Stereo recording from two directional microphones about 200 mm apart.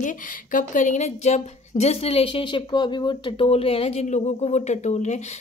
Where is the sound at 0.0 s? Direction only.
40° left (ahead or behind).